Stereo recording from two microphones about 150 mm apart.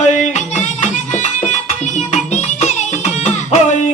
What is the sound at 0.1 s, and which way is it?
Music, 50° left (ahead or behind).